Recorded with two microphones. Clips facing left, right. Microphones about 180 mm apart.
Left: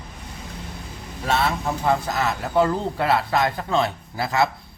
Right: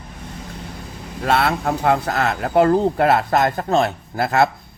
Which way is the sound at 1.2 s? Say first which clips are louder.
Right 4 dB; 65° right (ahead or behind).